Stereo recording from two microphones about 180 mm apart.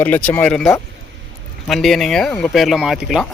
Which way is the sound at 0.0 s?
10° left (ahead or behind).